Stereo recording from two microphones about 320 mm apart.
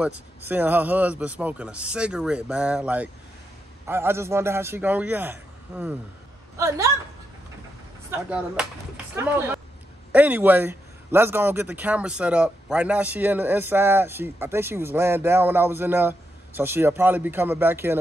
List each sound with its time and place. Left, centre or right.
0.0 s a man's voice: centre
8.1 s a man's voice: centre